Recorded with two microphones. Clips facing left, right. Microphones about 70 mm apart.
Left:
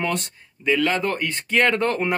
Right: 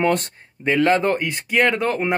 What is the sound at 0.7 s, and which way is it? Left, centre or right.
Speech, right.